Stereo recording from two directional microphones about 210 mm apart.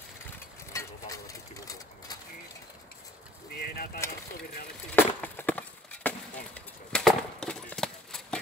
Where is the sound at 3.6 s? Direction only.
45° left (ahead or behind).